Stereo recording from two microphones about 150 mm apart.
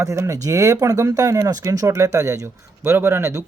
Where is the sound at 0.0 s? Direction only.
20° right (ahead or behind).